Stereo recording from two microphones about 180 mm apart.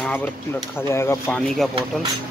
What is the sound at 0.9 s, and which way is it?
Speech, 15° left (ahead or behind).